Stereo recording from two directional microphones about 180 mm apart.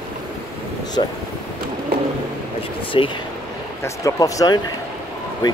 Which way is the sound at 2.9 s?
30° left (ahead or behind).